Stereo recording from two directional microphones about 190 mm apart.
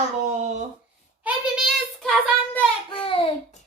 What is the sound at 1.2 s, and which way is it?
Child singing, centre (ahead or behind).